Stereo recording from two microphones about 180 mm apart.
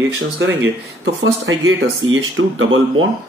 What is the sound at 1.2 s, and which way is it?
Speech, 90° right.